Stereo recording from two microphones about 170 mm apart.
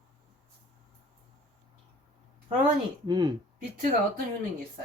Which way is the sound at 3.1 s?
25° right (ahead or behind).